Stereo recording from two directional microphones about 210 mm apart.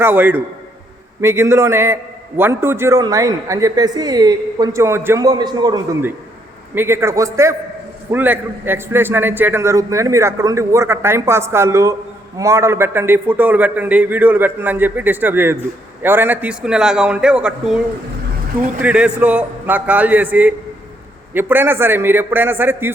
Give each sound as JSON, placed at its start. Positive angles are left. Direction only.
{"t": 0.0, "sound": "a man's voice", "side_deg": -10}
{"t": 18.8, "sound": "a man's voice", "side_deg": -5}